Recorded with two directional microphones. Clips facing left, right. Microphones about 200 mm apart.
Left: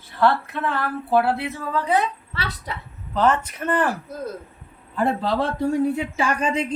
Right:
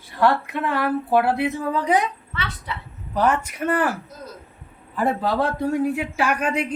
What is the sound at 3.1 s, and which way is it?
Speech, 10° right (ahead or behind).